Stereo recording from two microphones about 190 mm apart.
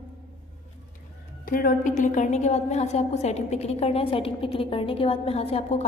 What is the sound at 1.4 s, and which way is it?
A woman's voice, 45° left (ahead or behind).